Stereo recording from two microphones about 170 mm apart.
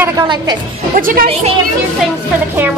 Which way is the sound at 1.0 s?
55° right (ahead or behind).